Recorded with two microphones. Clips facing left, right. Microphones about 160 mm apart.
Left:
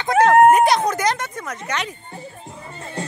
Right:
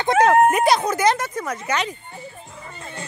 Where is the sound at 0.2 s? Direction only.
5° right (ahead or behind).